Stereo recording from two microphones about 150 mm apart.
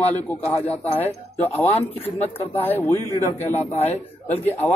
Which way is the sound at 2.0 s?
40° left (ahead or behind).